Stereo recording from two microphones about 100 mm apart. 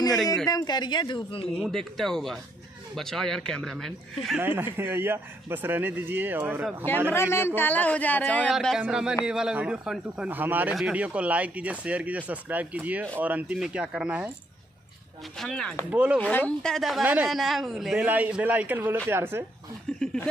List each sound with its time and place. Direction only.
0.5 s speech: 40° left (ahead or behind)
1.7 s speech: 5° left (ahead or behind)
4.4 s speech: 20° right (ahead or behind)
7.1 s speech: 25° left (ahead or behind)
8.5 s speech: centre (ahead or behind)
15.3 s speech: 5° left (ahead or behind)
15.9 s speech: 15° right (ahead or behind)
16.2 s speech: 15° left (ahead or behind)
17.0 s speech: 15° right (ahead or behind)
17.3 s speech: centre (ahead or behind)
17.9 s speech: 15° right (ahead or behind)
19.9 s speech: 10° left (ahead or behind)